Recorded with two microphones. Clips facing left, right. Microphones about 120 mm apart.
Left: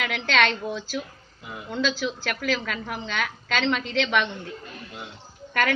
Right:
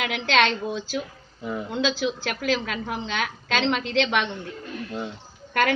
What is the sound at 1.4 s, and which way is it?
Speech, 40° right (ahead or behind).